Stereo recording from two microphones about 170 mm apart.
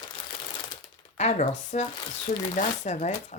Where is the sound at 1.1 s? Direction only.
40° left (ahead or behind).